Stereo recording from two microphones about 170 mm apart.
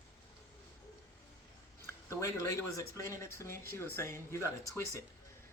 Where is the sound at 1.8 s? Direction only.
20° left (ahead or behind).